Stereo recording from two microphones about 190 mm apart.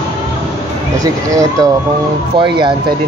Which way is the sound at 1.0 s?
15° right (ahead or behind).